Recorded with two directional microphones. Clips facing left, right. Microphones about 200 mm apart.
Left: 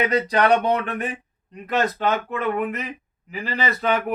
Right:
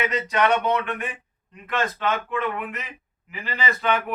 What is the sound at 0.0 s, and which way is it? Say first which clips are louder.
A man's voice: left 3 dB; 35° left (ahead or behind).